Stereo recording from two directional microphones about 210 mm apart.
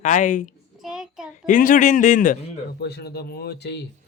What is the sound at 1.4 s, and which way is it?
A man's voice, 40° left (ahead or behind).